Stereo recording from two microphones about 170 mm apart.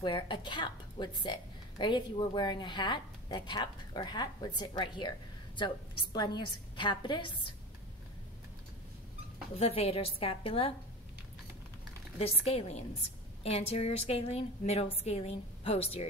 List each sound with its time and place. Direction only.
0.0 s a woman's voice: 30° left (ahead or behind)
6.1 s a woman's voice: 25° left (ahead or behind)
9.6 s a woman's voice: 35° left (ahead or behind)
12.2 s a woman's voice: 35° left (ahead or behind)